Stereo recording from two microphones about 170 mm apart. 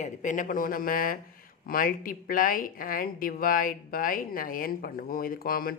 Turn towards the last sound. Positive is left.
turn(degrees=60)  # may be behind; listen again after turning